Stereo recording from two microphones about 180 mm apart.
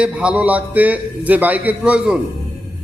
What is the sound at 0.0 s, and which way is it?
A man's voice, 5° right (ahead or behind).